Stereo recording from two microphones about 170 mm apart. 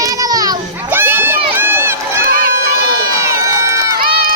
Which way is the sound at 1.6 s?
15° right (ahead or behind).